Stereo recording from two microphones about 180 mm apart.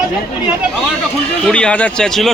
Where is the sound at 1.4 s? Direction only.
5° left (ahead or behind).